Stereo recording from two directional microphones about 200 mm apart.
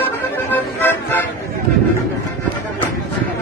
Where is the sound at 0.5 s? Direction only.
10° left (ahead or behind).